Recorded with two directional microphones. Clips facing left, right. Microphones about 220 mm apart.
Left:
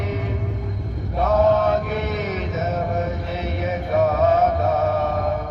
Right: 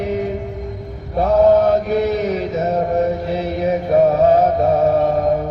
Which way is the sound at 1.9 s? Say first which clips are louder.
Right 8 dB; 35° right (ahead or behind).